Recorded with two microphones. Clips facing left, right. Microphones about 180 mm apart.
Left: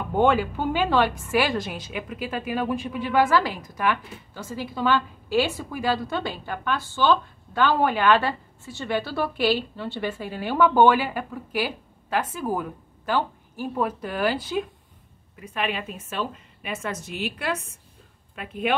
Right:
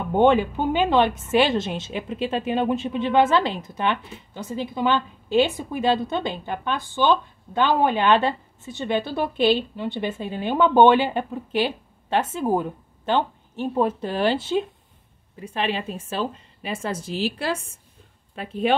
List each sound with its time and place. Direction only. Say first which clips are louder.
0.1 s a woman's voice: right 3 dB; 20° right (ahead or behind)